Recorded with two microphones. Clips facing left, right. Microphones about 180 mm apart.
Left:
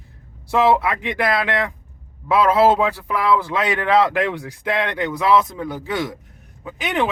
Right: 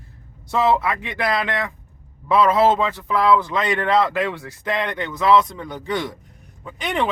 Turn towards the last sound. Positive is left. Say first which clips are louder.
# left 1 dB
turn(degrees=5)  # may be behind; listen again after turning